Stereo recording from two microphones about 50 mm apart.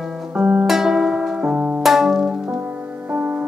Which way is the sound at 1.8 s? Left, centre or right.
Centre.